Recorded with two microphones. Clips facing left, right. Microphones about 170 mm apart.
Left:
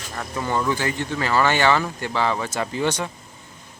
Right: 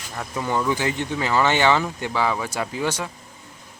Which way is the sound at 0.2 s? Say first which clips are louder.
Even; 10° right (ahead or behind).